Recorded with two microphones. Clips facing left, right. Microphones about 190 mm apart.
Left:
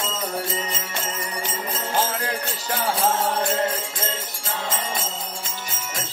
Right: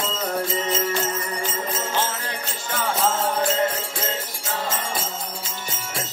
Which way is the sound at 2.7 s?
35° left (ahead or behind).